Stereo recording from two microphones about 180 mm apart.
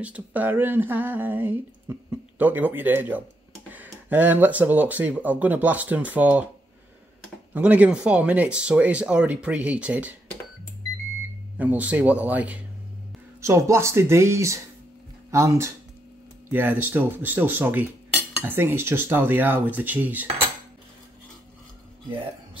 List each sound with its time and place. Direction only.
0.0 s speech: 10° right (ahead or behind)
7.5 s speech: 10° right (ahead or behind)
11.5 s speech: 10° right (ahead or behind)